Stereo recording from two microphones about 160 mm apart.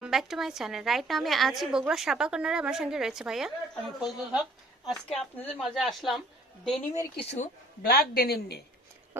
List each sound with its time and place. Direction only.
0.0 s a woman's voice: centre (ahead or behind)
7.2 s speech: 40° left (ahead or behind)
7.8 s a woman's voice: 70° left (ahead or behind)